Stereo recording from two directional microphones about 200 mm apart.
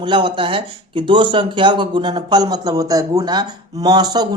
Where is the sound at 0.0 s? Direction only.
25° right (ahead or behind).